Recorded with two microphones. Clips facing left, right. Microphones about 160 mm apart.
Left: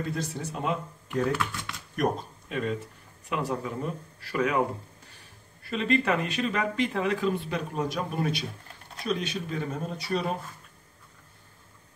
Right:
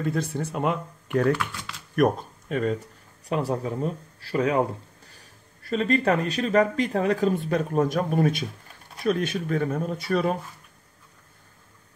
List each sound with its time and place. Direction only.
0.0 s speech: 55° right (ahead or behind)
2.0 s speech: 50° right (ahead or behind)